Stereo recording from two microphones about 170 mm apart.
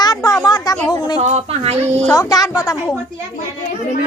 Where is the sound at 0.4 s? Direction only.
25° left (ahead or behind).